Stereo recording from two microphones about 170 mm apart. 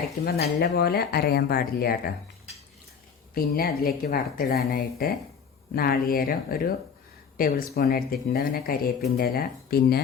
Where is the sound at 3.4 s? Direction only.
60° left (ahead or behind).